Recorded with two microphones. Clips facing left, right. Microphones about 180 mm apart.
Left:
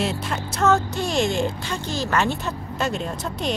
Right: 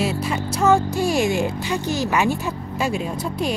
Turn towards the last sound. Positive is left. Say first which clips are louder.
# right 3 dB
turn(degrees=-10)  # may be behind; listen again after turning